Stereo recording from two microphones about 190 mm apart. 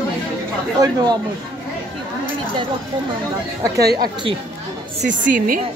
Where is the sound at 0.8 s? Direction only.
15° right (ahead or behind).